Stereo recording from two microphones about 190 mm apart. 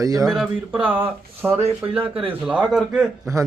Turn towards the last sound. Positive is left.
turn(degrees=0)  # may be behind; listen again after turning